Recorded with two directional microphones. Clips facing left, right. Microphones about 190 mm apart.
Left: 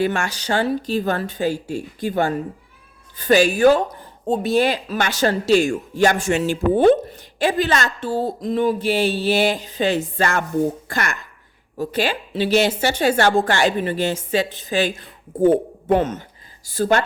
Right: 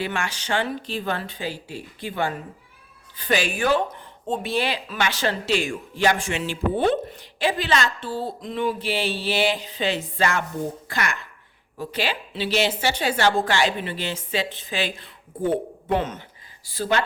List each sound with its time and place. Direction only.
0.0 s speech: 45° left (ahead or behind)